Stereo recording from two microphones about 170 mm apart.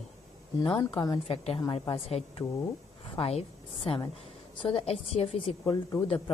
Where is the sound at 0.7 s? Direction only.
25° left (ahead or behind).